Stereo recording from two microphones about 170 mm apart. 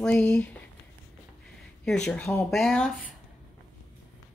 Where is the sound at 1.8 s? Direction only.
5° left (ahead or behind).